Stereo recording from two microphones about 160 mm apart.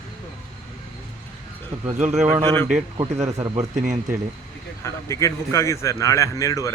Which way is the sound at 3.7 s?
50° right (ahead or behind).